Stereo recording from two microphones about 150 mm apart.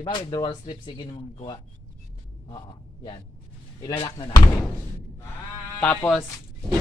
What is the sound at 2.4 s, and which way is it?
Speech, 30° left (ahead or behind).